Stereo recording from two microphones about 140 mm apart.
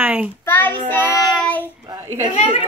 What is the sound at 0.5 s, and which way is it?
Child singing, 15° left (ahead or behind).